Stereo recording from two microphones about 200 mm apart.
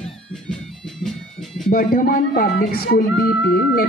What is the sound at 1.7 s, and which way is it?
Speech, 45° left (ahead or behind).